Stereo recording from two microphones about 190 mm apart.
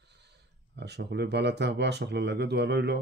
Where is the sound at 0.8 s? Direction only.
60° right (ahead or behind).